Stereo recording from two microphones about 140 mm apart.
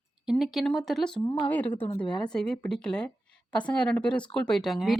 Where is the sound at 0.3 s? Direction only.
Centre (ahead or behind).